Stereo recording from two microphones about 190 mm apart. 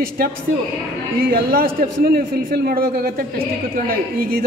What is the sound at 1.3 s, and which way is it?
A woman's voice, 50° right (ahead or behind).